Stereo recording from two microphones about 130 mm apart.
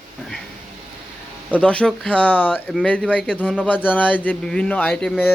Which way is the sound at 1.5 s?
10° left (ahead or behind).